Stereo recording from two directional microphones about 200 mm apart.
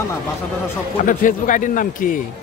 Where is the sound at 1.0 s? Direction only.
40° left (ahead or behind).